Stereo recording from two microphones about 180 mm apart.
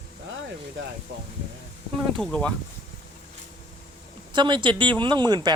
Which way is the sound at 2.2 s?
5° left (ahead or behind).